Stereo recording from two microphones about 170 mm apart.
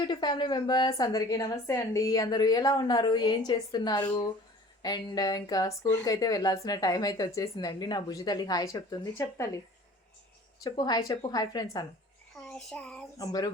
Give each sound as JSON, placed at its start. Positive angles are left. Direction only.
{"t": 0.1, "sound": "a woman's voice", "side_deg": 25}
{"t": 10.6, "sound": "a woman's voice", "side_deg": 25}
{"t": 12.5, "sound": "child singing", "side_deg": 5}
{"t": 13.1, "sound": "a woman's voice", "side_deg": 20}